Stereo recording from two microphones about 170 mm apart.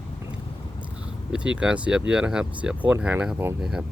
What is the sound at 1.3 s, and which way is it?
Speech, 5° right (ahead or behind).